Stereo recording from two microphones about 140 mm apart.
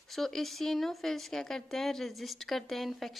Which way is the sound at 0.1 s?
Centre (ahead or behind).